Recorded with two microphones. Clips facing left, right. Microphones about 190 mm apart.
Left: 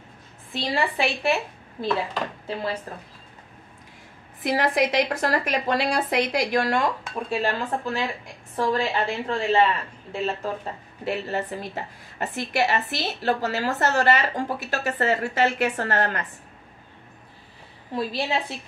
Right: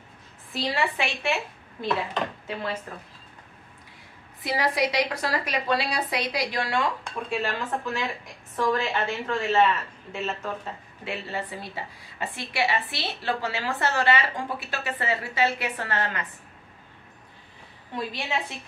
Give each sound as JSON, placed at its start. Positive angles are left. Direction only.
{"t": 0.5, "sound": "a woman's voice", "side_deg": 30}
{"t": 4.5, "sound": "a woman's voice", "side_deg": 50}
{"t": 7.2, "sound": "a woman's voice", "side_deg": 35}
{"t": 17.9, "sound": "speech", "side_deg": 35}